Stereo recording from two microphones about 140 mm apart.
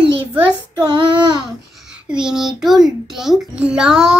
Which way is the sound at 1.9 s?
5° right (ahead or behind).